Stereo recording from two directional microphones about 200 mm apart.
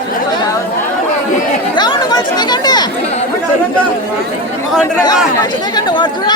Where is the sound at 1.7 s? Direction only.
20° left (ahead or behind).